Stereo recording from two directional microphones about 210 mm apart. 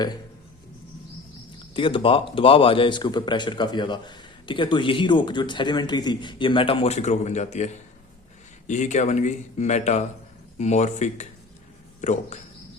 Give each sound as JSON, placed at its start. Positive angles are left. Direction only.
{"t": 1.7, "sound": "speech", "side_deg": 25}